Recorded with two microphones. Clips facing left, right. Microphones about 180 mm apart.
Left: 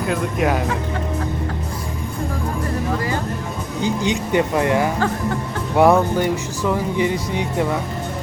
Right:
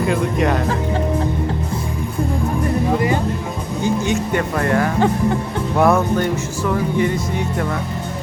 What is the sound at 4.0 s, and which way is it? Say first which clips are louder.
Speech: even; 15° left (ahead or behind).